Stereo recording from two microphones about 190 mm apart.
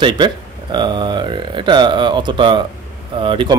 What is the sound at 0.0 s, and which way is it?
A man's voice, 25° right (ahead or behind).